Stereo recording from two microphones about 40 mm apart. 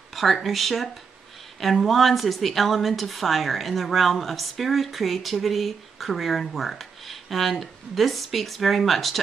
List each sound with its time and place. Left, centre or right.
0.1 s a woman's voice: centre